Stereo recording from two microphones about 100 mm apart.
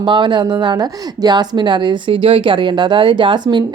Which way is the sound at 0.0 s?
55° right (ahead or behind).